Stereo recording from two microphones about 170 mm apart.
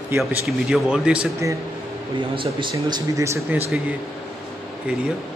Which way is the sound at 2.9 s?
20° right (ahead or behind).